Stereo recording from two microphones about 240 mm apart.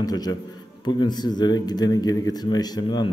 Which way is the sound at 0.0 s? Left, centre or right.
Centre.